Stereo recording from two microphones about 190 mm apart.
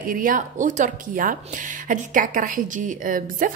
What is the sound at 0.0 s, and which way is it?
A woman's voice, 50° right (ahead or behind).